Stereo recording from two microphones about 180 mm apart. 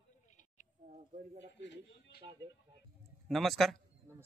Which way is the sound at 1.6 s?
80° left.